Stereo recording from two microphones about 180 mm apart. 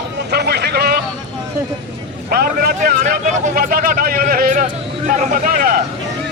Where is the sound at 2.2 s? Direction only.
60° right (ahead or behind).